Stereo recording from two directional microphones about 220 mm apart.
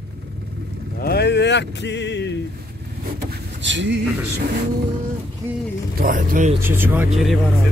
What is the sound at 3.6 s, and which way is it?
Speech, 55° right (ahead or behind).